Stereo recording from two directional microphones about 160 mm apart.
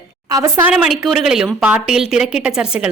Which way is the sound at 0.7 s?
5° right (ahead or behind).